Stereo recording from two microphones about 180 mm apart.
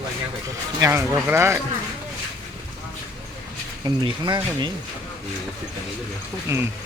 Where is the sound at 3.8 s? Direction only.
25° right (ahead or behind).